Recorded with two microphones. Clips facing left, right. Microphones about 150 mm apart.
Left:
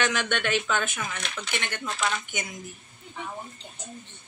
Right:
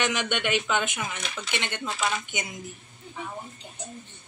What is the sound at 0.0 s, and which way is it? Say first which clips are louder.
Speech: even; 15° right (ahead or behind).